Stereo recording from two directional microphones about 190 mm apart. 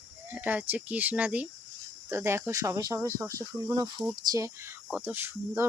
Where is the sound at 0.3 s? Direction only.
10° right (ahead or behind).